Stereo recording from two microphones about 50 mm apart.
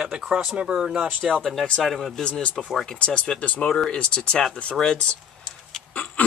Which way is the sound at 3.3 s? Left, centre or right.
Left.